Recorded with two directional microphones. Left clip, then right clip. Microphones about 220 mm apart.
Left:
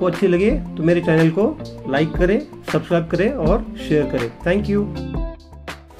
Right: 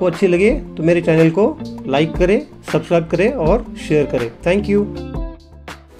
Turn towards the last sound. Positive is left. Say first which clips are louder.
# right 4 dB
turn(degrees=-15)  # may be behind; listen again after turning